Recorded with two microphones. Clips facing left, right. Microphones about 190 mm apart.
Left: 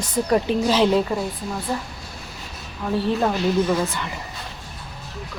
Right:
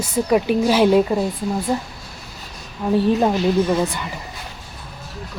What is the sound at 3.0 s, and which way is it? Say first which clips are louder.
Speech: right 2 dB; 15° right (ahead or behind).